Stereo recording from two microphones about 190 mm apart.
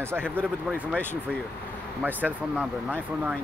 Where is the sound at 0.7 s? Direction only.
5° right (ahead or behind).